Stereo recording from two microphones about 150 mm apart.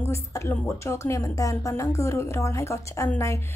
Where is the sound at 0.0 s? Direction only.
20° left (ahead or behind).